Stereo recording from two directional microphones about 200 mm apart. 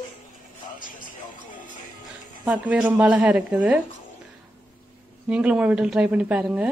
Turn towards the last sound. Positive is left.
turn(degrees=-5)  # may be behind; listen again after turning